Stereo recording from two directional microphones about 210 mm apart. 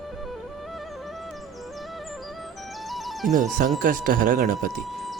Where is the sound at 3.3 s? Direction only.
40° right (ahead or behind).